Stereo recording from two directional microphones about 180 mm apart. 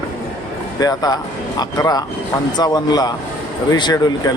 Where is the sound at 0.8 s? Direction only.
20° left (ahead or behind).